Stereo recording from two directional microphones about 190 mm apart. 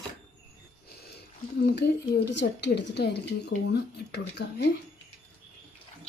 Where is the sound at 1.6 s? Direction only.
60° left (ahead or behind).